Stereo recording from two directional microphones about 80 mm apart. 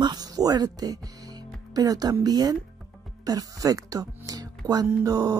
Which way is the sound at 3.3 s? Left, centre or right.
Right.